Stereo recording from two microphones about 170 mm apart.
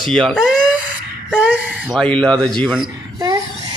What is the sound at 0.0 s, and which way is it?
Speech, 5° left (ahead or behind).